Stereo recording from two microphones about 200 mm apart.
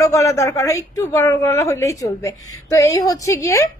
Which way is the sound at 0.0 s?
15° left (ahead or behind).